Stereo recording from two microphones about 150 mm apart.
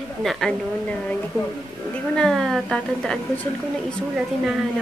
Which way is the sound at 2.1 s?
Centre (ahead or behind).